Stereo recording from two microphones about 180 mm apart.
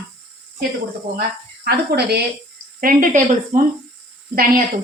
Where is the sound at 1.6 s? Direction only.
65° right (ahead or behind).